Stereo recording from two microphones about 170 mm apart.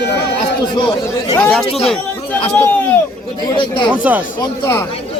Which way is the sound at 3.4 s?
25° left (ahead or behind).